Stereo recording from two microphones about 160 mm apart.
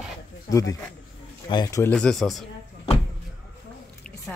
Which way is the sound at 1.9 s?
5° left (ahead or behind).